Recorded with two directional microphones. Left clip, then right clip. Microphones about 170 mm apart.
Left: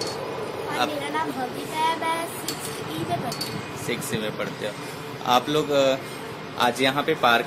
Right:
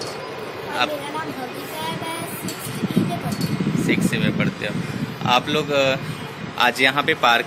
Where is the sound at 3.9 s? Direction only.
10° left (ahead or behind).